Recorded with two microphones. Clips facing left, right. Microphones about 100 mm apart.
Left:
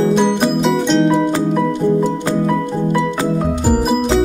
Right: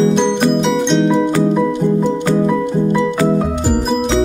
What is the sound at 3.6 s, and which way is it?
Music, 5° left (ahead or behind).